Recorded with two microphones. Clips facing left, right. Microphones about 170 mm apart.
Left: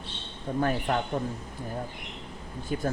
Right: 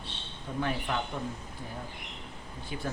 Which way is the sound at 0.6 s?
45° left (ahead or behind).